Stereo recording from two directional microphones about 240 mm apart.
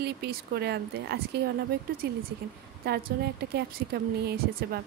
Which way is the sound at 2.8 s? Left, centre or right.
Right.